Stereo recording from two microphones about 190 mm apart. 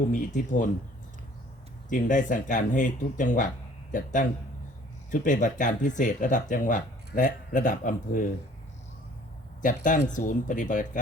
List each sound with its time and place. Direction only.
0.1 s speech: 45° left (ahead or behind)
1.9 s speech: 45° left (ahead or behind)
9.6 s speech: 45° left (ahead or behind)